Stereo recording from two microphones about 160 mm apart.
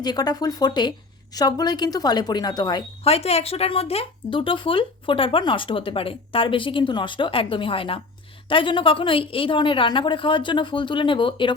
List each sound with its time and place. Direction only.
0.0 s a woman's voice: 25° left (ahead or behind)
3.0 s speech: 40° left (ahead or behind)